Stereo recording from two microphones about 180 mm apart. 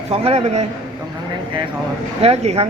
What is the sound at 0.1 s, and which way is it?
Speech, 35° right (ahead or behind).